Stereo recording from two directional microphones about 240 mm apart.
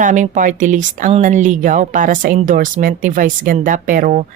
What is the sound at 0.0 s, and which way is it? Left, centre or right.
A woman's voice, right.